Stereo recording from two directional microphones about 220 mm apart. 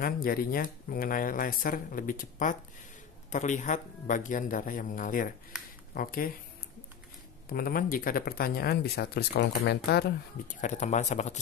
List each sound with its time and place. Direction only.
0.0 s speech: 40° left (ahead or behind)
7.5 s speech: 40° left (ahead or behind)